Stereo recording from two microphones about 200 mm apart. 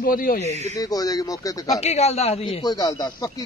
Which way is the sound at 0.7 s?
20° left (ahead or behind).